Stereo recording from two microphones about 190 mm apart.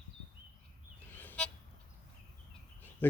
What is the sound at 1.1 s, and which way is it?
Vehicle, 10° left (ahead or behind).